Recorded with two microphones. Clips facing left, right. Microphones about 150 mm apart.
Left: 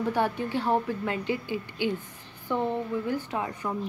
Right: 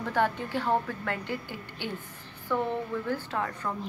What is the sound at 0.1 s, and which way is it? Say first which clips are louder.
A woman's voice: right 4 dB; 15° left (ahead or behind).